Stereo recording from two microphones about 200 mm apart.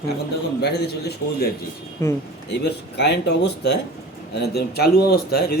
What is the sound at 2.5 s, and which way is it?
Speech, 55° left (ahead or behind).